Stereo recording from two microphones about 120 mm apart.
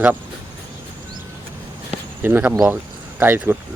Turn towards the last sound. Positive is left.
turn(degrees=-15)  # may be behind; listen again after turning